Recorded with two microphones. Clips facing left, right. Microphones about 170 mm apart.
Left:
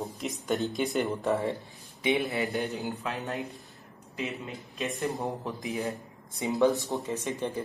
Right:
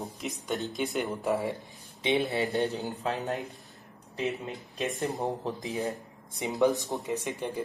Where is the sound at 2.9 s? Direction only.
35° right (ahead or behind).